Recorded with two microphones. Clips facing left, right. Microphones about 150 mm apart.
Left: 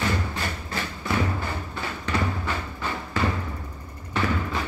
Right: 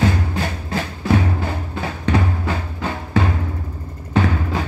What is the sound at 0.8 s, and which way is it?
Music, 55° right (ahead or behind).